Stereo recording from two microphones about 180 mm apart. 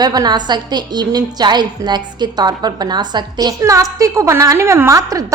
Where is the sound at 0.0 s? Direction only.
20° right (ahead or behind).